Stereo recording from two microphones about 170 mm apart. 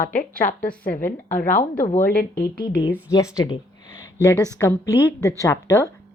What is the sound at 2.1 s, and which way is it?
Speech, 60° left (ahead or behind).